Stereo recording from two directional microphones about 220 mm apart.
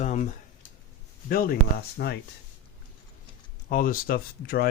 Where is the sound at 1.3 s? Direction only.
40° left (ahead or behind).